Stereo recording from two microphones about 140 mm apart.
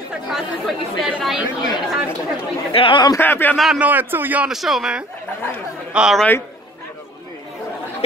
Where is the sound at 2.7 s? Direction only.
40° left (ahead or behind).